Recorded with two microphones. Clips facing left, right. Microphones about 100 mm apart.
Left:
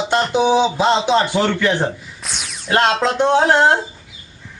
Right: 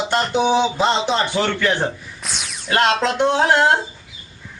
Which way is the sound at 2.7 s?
30° left (ahead or behind).